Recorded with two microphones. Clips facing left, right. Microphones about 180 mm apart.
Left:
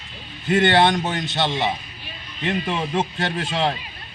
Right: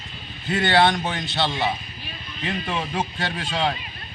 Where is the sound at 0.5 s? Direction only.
20° left (ahead or behind).